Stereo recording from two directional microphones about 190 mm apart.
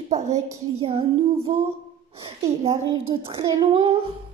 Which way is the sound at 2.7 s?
20° right (ahead or behind).